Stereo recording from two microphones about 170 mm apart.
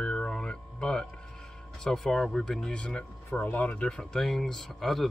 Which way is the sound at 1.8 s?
5° left (ahead or behind).